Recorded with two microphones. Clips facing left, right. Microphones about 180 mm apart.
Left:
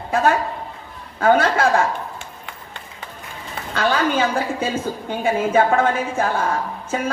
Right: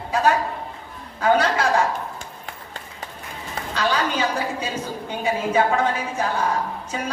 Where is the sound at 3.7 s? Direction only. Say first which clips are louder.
Left 4 dB; 55° left (ahead or behind).